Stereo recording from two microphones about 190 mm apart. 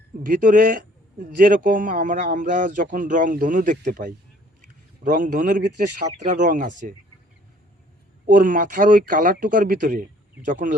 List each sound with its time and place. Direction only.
0.2 s a man's voice: 45° right (ahead or behind)
8.3 s a man's voice: 45° right (ahead or behind)